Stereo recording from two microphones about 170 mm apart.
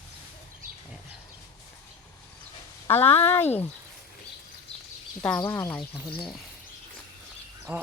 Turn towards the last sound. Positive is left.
turn(degrees=-15)  # may be behind; listen again after turning